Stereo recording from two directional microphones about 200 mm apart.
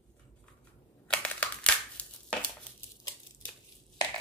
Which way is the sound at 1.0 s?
5° left (ahead or behind).